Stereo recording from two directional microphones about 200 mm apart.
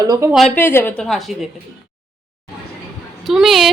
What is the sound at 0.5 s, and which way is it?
Speech, 10° left (ahead or behind).